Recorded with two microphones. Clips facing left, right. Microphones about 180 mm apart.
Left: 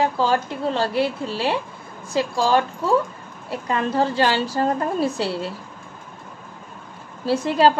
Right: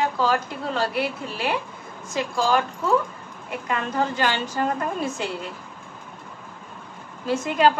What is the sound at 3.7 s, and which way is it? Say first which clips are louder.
A woman's voice: left 4 dB; 35° left (ahead or behind).